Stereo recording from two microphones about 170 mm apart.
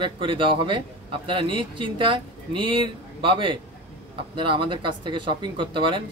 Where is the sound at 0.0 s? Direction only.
30° right (ahead or behind).